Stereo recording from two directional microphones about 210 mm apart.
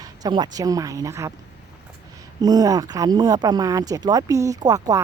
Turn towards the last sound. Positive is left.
turn(degrees=-15)  # may be behind; listen again after turning